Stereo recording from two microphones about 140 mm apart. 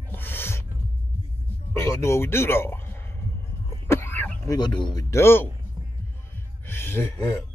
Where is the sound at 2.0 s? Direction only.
20° left (ahead or behind).